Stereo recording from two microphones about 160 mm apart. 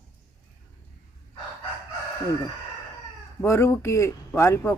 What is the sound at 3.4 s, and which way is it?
Speech, 15° left (ahead or behind).